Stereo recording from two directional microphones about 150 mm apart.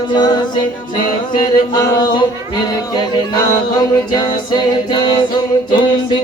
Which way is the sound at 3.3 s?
25° left (ahead or behind).